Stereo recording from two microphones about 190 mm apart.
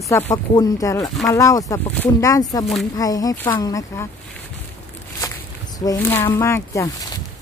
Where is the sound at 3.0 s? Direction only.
20° left (ahead or behind).